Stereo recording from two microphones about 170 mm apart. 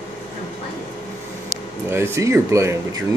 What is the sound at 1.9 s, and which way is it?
Speech, 15° right (ahead or behind).